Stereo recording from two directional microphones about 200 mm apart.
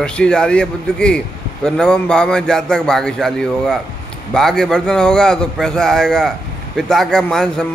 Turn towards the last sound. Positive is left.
turn(degrees=5)  # may be behind; listen again after turning